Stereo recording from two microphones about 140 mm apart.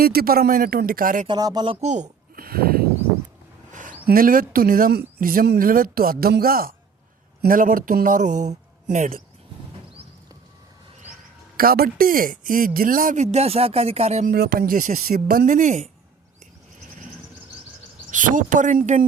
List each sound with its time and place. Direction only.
0.0 s speech: 90° right
1.3 s speech: 30° right (ahead or behind)
1.6 s speech: 40° right (ahead or behind)
1.9 s a sound: 70° right (ahead or behind); by 2.8 s 90° right
3.7 s speech: 70° right (ahead or behind)
11.5 s speech: 90° right; by 14.3 s 50° right (ahead or behind)
14.3 s speech: 90° right; by 15.9 s 60° right (ahead or behind)
18.1 s speech: 70° right (ahead or behind)